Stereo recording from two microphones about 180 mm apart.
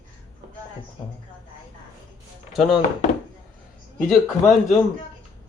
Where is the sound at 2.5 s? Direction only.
Centre (ahead or behind).